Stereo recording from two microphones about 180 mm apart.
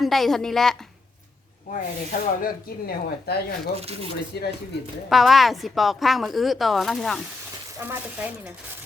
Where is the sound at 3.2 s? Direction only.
60° left (ahead or behind).